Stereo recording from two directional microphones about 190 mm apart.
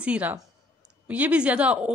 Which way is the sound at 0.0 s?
5° right (ahead or behind).